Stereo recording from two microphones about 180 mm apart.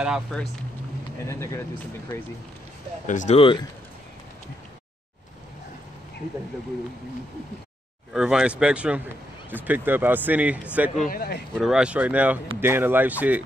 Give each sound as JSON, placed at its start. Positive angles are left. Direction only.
{"t": 0.0, "sound": "speech", "side_deg": 0}
{"t": 1.3, "sound": "speech", "side_deg": 15}
{"t": 3.1, "sound": "speech", "side_deg": 40}
{"t": 8.1, "sound": "speech", "side_deg": -5}
{"t": 11.1, "sound": "speech", "side_deg": 60}
{"t": 11.5, "sound": "speech", "side_deg": 0}